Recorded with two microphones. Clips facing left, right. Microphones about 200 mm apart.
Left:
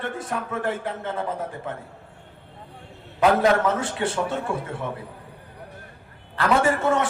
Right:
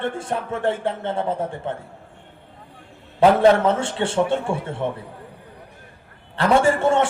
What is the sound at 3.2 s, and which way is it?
A man's voice, 30° right (ahead or behind).